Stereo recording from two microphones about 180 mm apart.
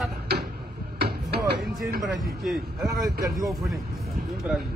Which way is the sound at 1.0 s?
65° right (ahead or behind).